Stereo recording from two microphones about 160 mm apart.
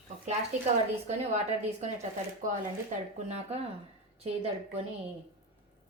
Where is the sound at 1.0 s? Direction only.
45° right (ahead or behind).